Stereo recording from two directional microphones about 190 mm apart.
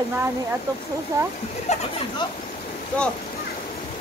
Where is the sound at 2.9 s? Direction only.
5° left (ahead or behind).